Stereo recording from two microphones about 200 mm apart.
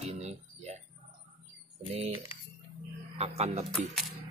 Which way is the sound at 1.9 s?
30° right (ahead or behind).